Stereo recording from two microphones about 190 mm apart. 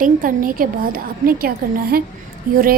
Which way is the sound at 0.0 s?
45° right (ahead or behind).